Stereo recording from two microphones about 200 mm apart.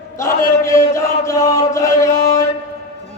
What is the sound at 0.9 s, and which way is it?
Chant, 15° left (ahead or behind).